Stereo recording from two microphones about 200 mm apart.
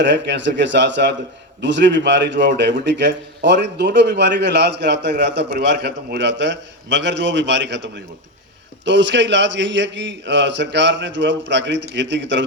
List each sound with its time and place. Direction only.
0.0 s a man's voice: 60° right (ahead or behind)